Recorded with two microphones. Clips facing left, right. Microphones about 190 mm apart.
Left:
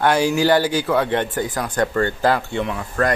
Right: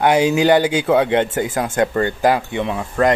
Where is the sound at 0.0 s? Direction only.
20° right (ahead or behind).